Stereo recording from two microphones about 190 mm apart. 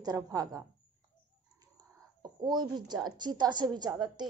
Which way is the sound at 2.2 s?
20° right (ahead or behind).